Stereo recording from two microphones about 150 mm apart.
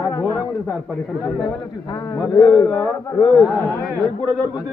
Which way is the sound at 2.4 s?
30° left (ahead or behind).